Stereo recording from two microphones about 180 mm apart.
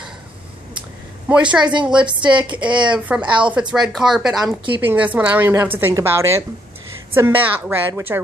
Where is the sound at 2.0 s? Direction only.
25° right (ahead or behind).